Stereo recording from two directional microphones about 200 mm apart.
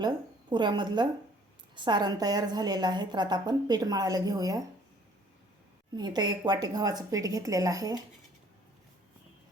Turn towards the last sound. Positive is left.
turn(degrees=-15)  # may be behind; listen again after turning